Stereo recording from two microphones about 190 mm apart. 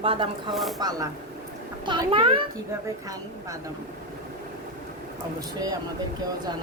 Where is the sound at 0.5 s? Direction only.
Centre (ahead or behind).